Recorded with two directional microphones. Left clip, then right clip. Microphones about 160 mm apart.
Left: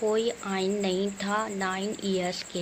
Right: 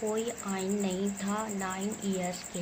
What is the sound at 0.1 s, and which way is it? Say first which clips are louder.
Speech: left 6 dB; 40° left (ahead or behind).